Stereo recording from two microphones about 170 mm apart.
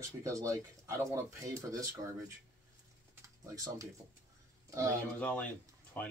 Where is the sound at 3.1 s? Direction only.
20° right (ahead or behind).